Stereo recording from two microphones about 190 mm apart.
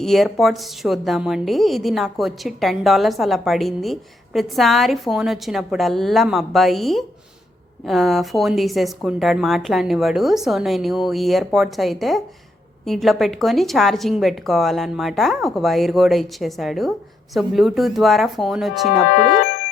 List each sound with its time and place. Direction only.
0.0 s speech: centre (ahead or behind)
18.9 s speech: 65° left (ahead or behind)